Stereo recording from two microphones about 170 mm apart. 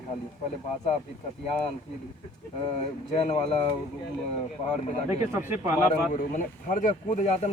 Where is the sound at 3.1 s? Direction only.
35° left (ahead or behind).